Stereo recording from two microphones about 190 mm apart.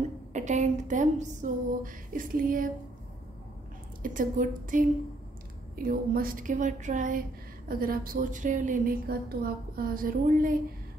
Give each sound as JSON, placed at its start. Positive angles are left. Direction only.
{"t": 0.3, "sound": "speech", "side_deg": -40}
{"t": 4.0, "sound": "a woman's voice", "side_deg": -45}